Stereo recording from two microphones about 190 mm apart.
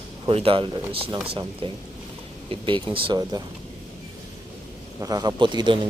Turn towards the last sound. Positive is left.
turn(degrees=-25)  # may be behind; listen again after turning